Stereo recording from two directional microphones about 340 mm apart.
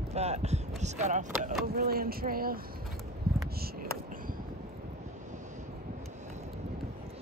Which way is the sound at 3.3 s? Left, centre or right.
Right.